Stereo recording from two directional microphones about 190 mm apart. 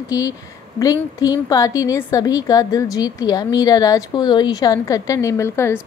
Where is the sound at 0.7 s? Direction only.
20° left (ahead or behind).